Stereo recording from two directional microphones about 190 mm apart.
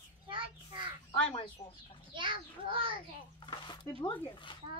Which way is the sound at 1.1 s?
30° left (ahead or behind).